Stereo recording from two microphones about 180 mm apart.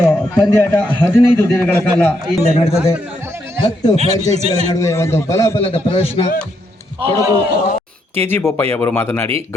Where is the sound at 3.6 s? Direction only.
20° left (ahead or behind).